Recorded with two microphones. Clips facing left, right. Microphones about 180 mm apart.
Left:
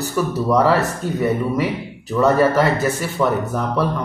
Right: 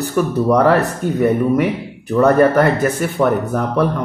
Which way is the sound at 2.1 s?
55° right (ahead or behind).